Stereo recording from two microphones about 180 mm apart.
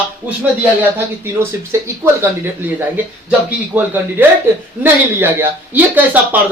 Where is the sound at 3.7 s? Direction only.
10° right (ahead or behind).